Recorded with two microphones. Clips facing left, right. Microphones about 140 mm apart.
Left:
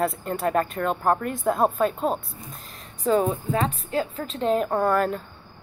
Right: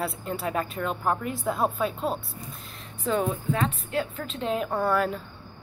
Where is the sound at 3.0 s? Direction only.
35° left (ahead or behind).